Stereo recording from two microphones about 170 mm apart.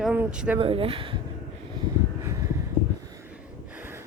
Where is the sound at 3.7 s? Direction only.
10° right (ahead or behind).